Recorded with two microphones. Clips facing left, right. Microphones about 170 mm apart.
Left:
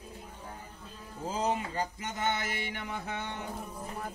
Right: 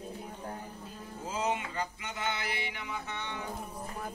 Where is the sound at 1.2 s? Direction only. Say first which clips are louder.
Left 2 dB; 35° left (ahead or behind); by 3.3 s 50° left (ahead or behind).